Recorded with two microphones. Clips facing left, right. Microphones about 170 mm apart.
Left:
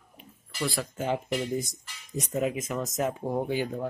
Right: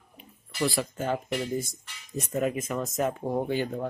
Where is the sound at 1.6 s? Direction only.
15° left (ahead or behind).